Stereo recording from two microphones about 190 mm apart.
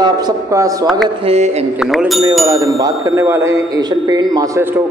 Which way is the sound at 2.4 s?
20° right (ahead or behind).